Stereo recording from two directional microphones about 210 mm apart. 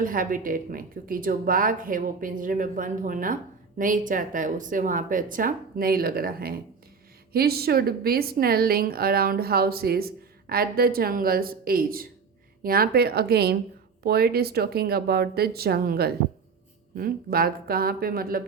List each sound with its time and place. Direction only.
0.0 s a woman's voice: 40° right (ahead or behind)